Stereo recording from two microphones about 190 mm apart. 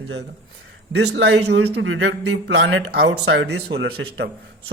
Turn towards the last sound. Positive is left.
turn(degrees=-60)  # may be behind; listen again after turning